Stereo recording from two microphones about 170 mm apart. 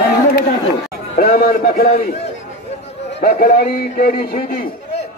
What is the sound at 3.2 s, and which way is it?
A man's voice, 60° left (ahead or behind).